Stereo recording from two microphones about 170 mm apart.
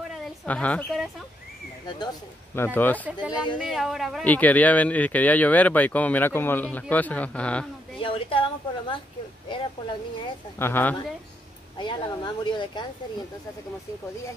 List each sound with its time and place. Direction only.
0.2 s a sound: 10° left (ahead or behind)
2.5 s speech: 10° left (ahead or behind)
3.1 s speech: 5° right (ahead or behind)
8.0 s a woman's voice: 30° left (ahead or behind)
10.6 s speech: 10° left (ahead or behind)
11.8 s speech: 25° left (ahead or behind)